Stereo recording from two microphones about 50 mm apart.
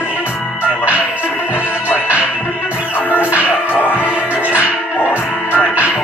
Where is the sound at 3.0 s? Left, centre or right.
Right.